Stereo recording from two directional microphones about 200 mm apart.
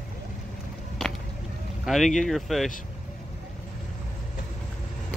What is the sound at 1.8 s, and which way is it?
Speech, centre (ahead or behind).